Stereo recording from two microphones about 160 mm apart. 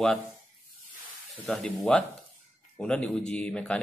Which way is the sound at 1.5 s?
5° left (ahead or behind).